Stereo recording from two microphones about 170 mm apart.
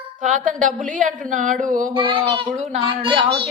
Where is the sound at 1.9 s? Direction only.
30° right (ahead or behind).